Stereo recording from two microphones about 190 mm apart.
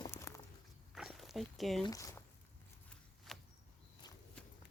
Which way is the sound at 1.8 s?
15° left (ahead or behind).